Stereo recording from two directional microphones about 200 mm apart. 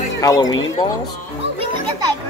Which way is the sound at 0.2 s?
20° left (ahead or behind).